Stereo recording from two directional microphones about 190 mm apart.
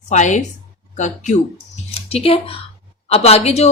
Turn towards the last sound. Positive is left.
turn(degrees=35)  # may be behind; listen again after turning